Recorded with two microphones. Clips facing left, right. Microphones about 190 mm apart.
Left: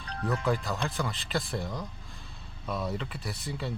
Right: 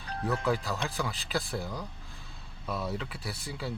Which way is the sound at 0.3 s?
Centre (ahead or behind).